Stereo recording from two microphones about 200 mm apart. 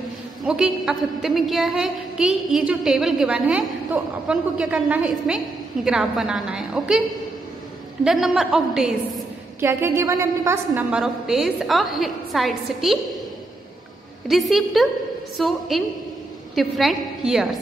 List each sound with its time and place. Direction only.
0.5 s a woman's voice: 5° right (ahead or behind)
8.0 s a woman's voice: centre (ahead or behind)
14.2 s a woman's voice: centre (ahead or behind)